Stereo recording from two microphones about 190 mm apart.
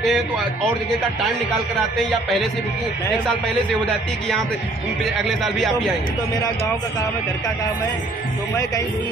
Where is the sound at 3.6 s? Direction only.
5° left (ahead or behind).